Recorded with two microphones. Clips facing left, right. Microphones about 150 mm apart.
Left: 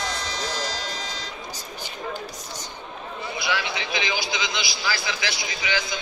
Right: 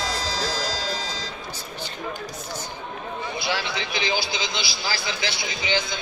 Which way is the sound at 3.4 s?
30° right (ahead or behind).